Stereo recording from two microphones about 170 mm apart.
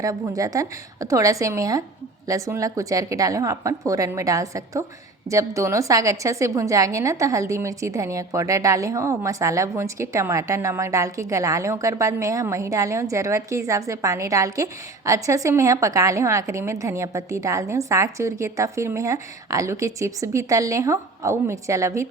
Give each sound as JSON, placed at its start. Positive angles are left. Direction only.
{"t": 0.0, "sound": "a woman's voice", "side_deg": -20}